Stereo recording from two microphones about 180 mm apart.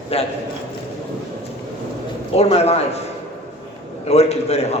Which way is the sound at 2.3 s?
35° left (ahead or behind).